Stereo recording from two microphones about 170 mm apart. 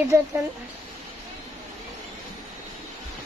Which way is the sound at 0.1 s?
15° right (ahead or behind).